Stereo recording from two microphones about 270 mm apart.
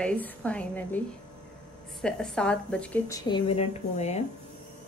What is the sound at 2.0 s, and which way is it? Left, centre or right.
A woman's voice, centre.